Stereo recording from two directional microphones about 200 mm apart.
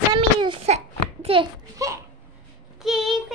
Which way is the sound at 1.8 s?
15° right (ahead or behind).